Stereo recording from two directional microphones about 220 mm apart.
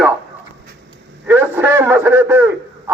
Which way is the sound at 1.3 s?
10° right (ahead or behind).